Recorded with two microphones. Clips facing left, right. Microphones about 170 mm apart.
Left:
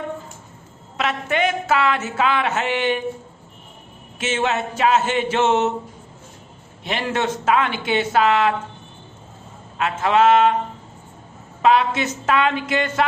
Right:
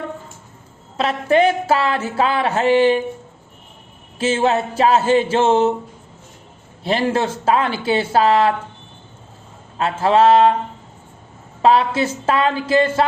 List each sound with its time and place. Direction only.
0.9 s speech: 35° right (ahead or behind)
4.2 s speech: 35° right (ahead or behind)
6.8 s speech: 35° right (ahead or behind)
9.7 s speech: 35° right (ahead or behind)
11.6 s speech: 35° right (ahead or behind)